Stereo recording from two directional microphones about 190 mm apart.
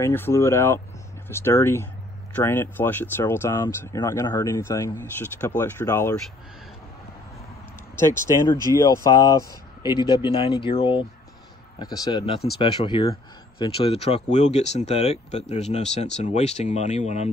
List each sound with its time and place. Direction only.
0.0 s speech: 15° left (ahead or behind)
7.9 s speech: 15° left (ahead or behind); by 17.3 s 35° left (ahead or behind)